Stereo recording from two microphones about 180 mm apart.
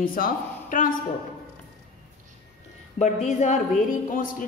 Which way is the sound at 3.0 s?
40° left (ahead or behind).